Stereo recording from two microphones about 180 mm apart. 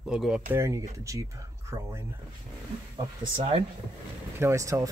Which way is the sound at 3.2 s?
30° right (ahead or behind).